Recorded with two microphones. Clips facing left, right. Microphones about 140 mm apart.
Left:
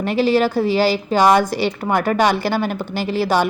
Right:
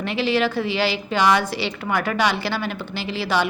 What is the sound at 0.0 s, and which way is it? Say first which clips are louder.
A woman's voice: left 5 dB; 45° left (ahead or behind).